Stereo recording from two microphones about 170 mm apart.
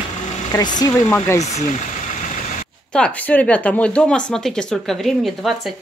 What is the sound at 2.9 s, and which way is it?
Speech, 5° left (ahead or behind).